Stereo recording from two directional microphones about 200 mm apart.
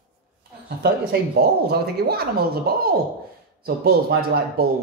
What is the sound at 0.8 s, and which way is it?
Speech, 55° right (ahead or behind).